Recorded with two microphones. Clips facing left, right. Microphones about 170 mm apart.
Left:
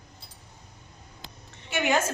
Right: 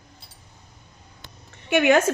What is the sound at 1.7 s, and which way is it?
Speech, 65° right (ahead or behind).